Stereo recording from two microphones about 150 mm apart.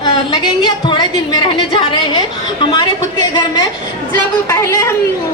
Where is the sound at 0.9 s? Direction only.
30° left (ahead or behind).